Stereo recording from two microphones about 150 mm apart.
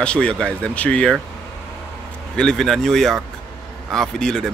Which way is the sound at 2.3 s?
5° left (ahead or behind).